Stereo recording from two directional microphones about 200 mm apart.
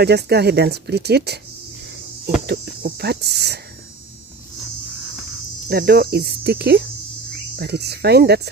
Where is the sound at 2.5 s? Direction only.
55° right (ahead or behind).